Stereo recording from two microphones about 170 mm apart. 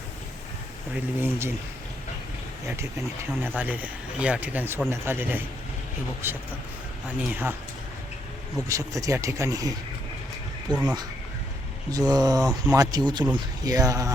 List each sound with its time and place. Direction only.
0.9 s speech: 15° right (ahead or behind)
3.6 s speech: 10° right (ahead or behind)
8.6 s speech: 20° right (ahead or behind)
11.9 s speech: 20° right (ahead or behind)